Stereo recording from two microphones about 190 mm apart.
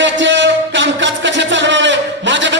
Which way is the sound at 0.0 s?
75° right (ahead or behind).